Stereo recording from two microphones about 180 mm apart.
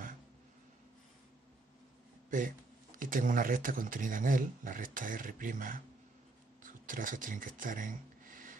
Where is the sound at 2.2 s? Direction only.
50° right (ahead or behind).